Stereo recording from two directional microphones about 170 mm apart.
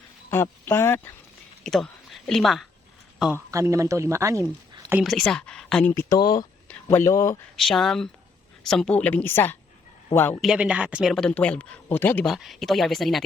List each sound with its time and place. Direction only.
0.6 s speech: 15° left (ahead or behind)
1.6 s a sound: centre (ahead or behind)
3.3 s speech: 15° right (ahead or behind)
4.8 s a sound: 15° right (ahead or behind)
5.0 s speech: 5° left (ahead or behind)
5.9 s speech: 20° left (ahead or behind)
7.5 s a woman's voice: centre (ahead or behind)
10.4 s speech: 5° right (ahead or behind); by 12.3 s 10° left (ahead or behind)
12.3 s speech: centre (ahead or behind)